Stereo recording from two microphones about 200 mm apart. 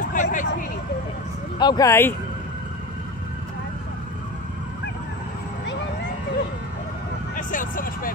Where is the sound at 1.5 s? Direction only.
20° left (ahead or behind).